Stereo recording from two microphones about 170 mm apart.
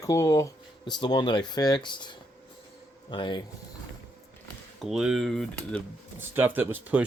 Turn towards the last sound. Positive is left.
turn(degrees=-10)  # may be behind; listen again after turning